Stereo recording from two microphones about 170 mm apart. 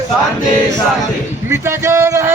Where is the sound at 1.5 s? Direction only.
15° right (ahead or behind).